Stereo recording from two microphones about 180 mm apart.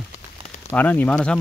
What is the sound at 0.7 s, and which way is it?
Speech, 10° left (ahead or behind).